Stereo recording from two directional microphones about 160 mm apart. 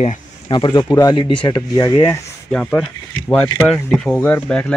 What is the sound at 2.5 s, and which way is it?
Speech, 5° left (ahead or behind).